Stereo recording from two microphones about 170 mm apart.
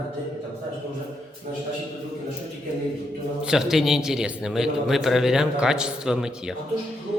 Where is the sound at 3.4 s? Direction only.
5° right (ahead or behind).